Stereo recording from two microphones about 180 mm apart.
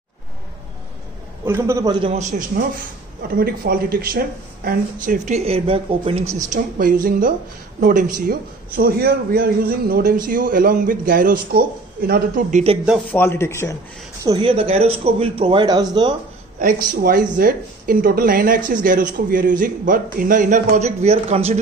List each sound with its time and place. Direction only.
1.4 s a man's voice: 15° right (ahead or behind)
2.0 s speech: 35° right (ahead or behind)
3.3 s speech: 55° right (ahead or behind); by 6.3 s 35° right (ahead or behind)
6.5 s a man's voice: 50° right (ahead or behind)
13.1 s speech: 10° left (ahead or behind)
14.2 s speech: 25° right (ahead or behind)
16.5 s a man's voice: 50° right (ahead or behind); by 21.5 s 35° right (ahead or behind)